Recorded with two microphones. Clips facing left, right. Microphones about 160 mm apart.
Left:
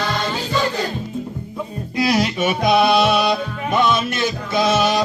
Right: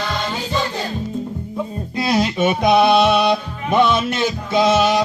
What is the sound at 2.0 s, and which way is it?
Music, 25° right (ahead or behind).